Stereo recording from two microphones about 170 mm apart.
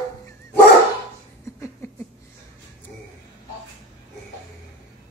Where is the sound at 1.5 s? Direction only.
15° left (ahead or behind).